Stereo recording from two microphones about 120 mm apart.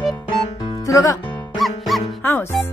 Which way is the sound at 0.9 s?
25° left (ahead or behind).